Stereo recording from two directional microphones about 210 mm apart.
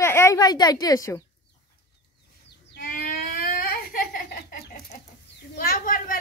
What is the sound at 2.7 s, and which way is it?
Baby cry, 40° left (ahead or behind).